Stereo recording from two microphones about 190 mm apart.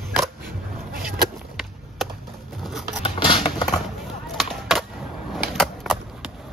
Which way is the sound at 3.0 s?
25° left (ahead or behind).